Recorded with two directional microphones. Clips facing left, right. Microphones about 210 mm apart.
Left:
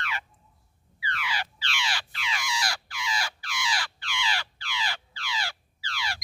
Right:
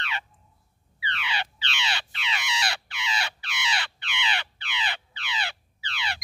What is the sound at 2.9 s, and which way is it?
Crow, 20° right (ahead or behind).